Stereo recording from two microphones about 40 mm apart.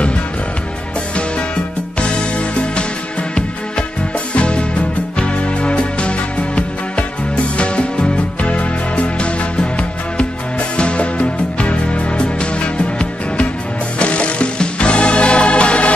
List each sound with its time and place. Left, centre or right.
2.0 s music: left
4.3 s music: left
13.9 s music: left